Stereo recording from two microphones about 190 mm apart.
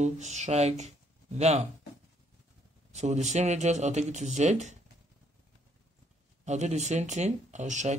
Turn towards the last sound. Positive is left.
turn(degrees=-40)  # may be behind; listen again after turning